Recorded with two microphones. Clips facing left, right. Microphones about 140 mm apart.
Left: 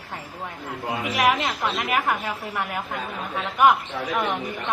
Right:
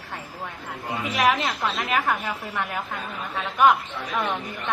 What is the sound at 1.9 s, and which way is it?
Speech, 15° left (ahead or behind).